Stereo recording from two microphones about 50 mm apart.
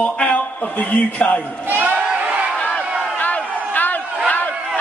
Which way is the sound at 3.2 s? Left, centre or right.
Left.